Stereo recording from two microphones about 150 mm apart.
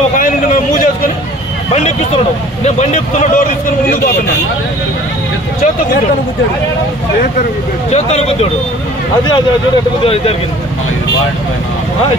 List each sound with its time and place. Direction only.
0.2 s a sound: 60° left (ahead or behind)
2.6 s speech: 50° left (ahead or behind)
7.9 s speech: 45° left (ahead or behind)